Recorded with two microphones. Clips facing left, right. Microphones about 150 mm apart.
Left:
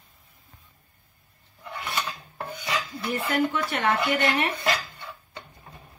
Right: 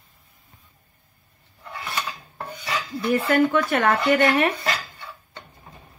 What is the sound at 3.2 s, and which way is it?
Speech, 60° right (ahead or behind).